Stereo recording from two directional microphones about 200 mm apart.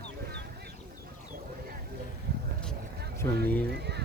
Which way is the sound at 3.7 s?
55° right (ahead or behind).